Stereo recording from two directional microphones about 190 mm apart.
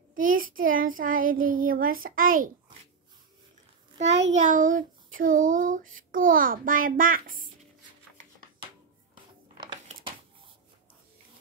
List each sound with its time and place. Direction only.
0.1 s speech: 45° right (ahead or behind)
4.2 s speech: 35° right (ahead or behind)
9.6 s a sound: 25° right (ahead or behind)